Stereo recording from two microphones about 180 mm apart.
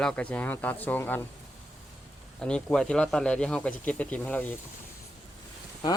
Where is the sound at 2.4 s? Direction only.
5° left (ahead or behind).